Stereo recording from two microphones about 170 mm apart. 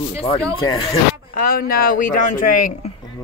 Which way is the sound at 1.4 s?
60° left (ahead or behind).